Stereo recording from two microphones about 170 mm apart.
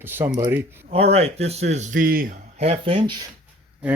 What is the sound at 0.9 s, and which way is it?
Speech, 35° right (ahead or behind).